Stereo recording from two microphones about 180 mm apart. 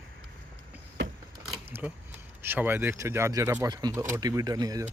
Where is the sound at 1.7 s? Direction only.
10° right (ahead or behind).